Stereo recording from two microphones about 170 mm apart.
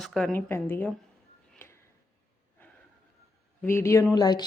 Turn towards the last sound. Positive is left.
turn(degrees=25)  # may be behind; listen again after turning